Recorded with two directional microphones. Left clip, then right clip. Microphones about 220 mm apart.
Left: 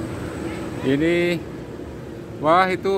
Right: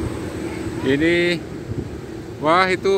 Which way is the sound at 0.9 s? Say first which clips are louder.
Right 2 dB; 10° left (ahead or behind).